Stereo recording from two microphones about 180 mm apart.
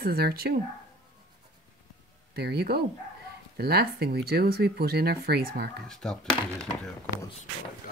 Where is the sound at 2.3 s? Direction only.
60° right (ahead or behind).